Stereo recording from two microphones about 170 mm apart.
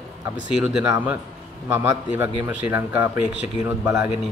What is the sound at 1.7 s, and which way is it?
Speech, 15° right (ahead or behind).